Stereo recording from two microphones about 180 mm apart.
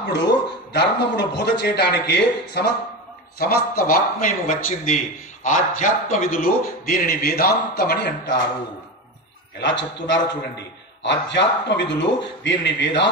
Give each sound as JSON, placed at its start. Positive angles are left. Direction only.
{"t": 0.0, "sound": "a man's voice", "side_deg": 75}
{"t": 3.3, "sound": "a man's voice", "side_deg": 55}
{"t": 9.6, "sound": "a man's voice", "side_deg": 85}
{"t": 11.0, "sound": "a man's voice", "side_deg": 75}